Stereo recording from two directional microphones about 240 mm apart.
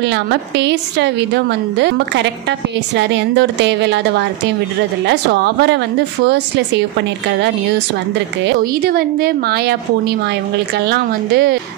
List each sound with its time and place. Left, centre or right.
0.0 s a woman's voice: right
8.5 s a woman's voice: right